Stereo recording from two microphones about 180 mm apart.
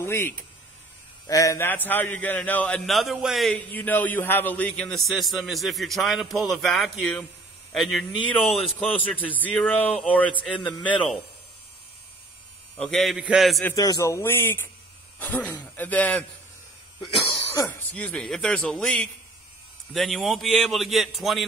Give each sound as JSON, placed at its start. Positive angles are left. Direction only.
{"t": 0.0, "sound": "a man's voice", "side_deg": 15}
{"t": 3.7, "sound": "a man's voice", "side_deg": 10}
{"t": 12.7, "sound": "a man's voice", "side_deg": 5}
{"t": 13.7, "sound": "a man's voice", "side_deg": 20}
{"t": 17.0, "sound": "speech", "side_deg": 20}
{"t": 18.0, "sound": "a man's voice", "side_deg": 0}